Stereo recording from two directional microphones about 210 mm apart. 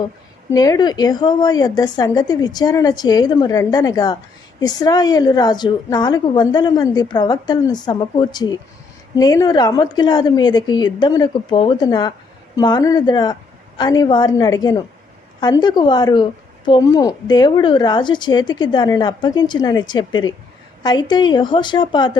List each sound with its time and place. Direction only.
0.5 s a woman's voice: 20° left (ahead or behind)